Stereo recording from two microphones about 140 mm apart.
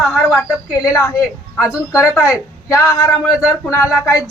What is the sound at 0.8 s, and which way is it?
Speech, 20° left (ahead or behind).